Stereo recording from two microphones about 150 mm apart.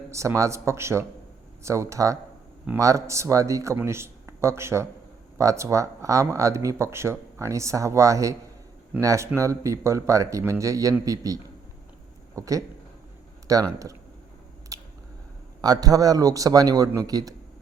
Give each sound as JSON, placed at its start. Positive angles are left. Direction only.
{"t": 0.1, "sound": "speech", "side_deg": -20}
{"t": 14.7, "sound": "a sound", "side_deg": -25}
{"t": 15.6, "sound": "speech", "side_deg": -25}